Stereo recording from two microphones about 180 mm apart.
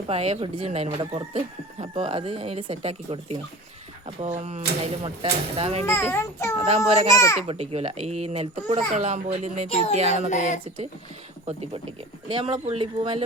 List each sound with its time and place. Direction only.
0.1 s a child's voice: 35° right (ahead or behind)
5.8 s a child's voice: 15° left (ahead or behind)
6.7 s a child's voice: 40° right (ahead or behind)
9.6 s speech: 35° left (ahead or behind)
9.9 s a child's voice: 35° right (ahead or behind)
10.2 s speech: 40° left (ahead or behind)
12.3 s speech: 30° right (ahead or behind)